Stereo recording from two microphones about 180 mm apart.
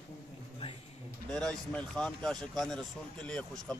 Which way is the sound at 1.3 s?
5° left (ahead or behind).